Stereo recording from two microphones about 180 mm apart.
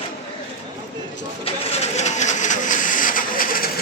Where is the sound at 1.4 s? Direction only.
35° left (ahead or behind); by 3.7 s 50° left (ahead or behind).